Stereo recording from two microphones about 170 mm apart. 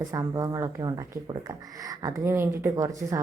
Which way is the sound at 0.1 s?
20° right (ahead or behind).